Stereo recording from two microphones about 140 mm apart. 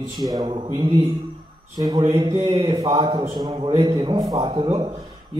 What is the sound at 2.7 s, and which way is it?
A man's voice, 30° right (ahead or behind).